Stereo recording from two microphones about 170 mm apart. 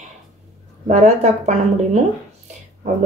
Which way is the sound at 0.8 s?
45° right (ahead or behind).